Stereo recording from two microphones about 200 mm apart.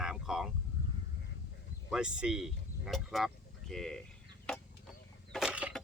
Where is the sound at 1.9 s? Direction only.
5° right (ahead or behind).